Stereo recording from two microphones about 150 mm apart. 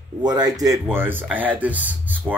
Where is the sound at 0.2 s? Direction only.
25° right (ahead or behind).